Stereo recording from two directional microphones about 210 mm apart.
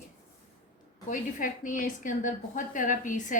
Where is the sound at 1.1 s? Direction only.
40° left (ahead or behind).